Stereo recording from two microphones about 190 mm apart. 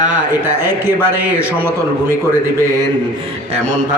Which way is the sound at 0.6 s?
10° right (ahead or behind).